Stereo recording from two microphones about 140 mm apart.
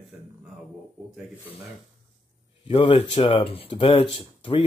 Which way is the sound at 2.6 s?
40° left (ahead or behind).